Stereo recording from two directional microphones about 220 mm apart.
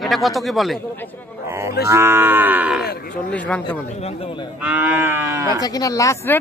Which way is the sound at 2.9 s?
45° left (ahead or behind).